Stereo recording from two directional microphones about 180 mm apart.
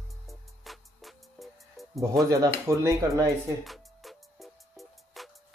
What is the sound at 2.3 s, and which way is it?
Speech, 15° right (ahead or behind).